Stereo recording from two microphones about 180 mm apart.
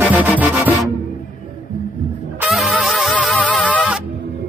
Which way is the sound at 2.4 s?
5° right (ahead or behind).